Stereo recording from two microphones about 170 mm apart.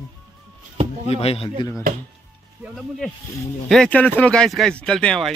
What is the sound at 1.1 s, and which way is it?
Speech, 35° left (ahead or behind).